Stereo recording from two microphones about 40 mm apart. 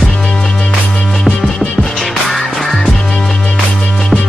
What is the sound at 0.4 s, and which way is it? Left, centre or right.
Music, centre.